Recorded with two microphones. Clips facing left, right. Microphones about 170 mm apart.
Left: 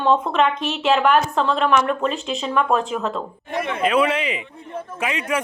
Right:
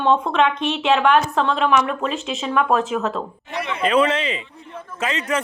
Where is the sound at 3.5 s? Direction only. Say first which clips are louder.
Left 2 dB; 50° left (ahead or behind).